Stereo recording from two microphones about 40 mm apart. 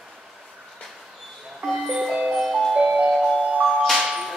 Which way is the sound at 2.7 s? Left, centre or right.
Centre.